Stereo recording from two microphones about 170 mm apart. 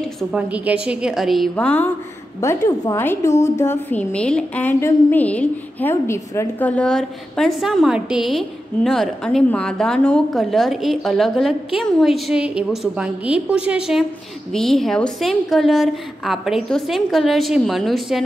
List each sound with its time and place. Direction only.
0.0 s a woman's voice: 5° right (ahead or behind)